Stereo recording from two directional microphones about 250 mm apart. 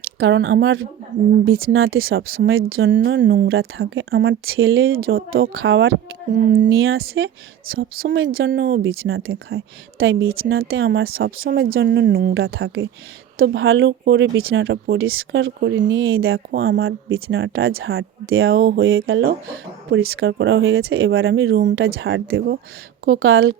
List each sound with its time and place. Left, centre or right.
0.2 s a woman's voice: right
8.0 s a woman's voice: right